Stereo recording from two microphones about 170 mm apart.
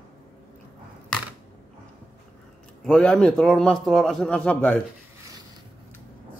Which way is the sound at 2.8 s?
5° left (ahead or behind).